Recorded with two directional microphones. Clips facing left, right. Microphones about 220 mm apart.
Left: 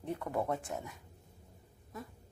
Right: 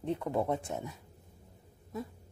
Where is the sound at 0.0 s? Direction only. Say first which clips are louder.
Right 4 dB; 20° right (ahead or behind).